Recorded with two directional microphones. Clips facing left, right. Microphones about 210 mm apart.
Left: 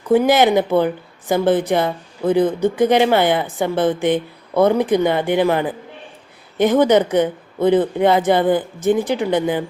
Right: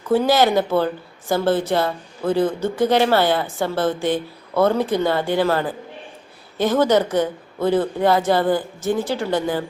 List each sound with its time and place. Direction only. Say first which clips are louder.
0.1 s a woman's voice: left 3 dB; 20° left (ahead or behind)